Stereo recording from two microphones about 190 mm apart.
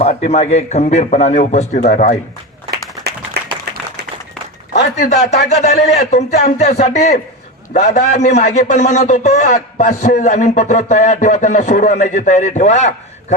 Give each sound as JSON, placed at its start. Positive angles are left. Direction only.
{"t": 0.0, "sound": "a man's voice", "side_deg": 35}
{"t": 4.7, "sound": "a sound", "side_deg": 60}
{"t": 5.0, "sound": "a man's voice", "side_deg": 35}